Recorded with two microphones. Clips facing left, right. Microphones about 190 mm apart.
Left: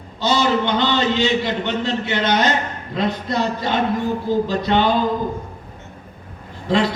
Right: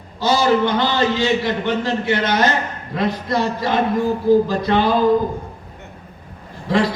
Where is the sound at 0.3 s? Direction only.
25° left (ahead or behind).